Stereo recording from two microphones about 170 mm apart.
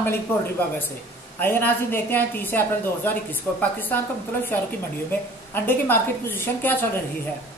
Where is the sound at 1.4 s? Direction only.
10° left (ahead or behind).